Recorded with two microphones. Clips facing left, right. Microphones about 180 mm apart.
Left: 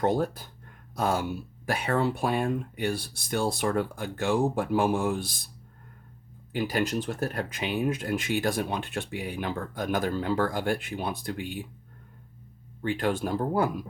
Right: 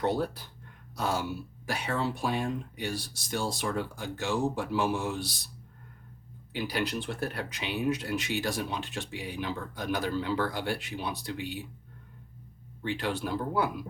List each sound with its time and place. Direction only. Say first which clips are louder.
0.0 s speech: left 3 dB; 50° left (ahead or behind)
6.5 s speech: left 4 dB; 45° left (ahead or behind)
12.8 s speech: left 4 dB; 50° left (ahead or behind)